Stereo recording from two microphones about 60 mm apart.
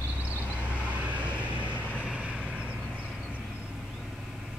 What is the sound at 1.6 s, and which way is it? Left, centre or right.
Vehicle, left.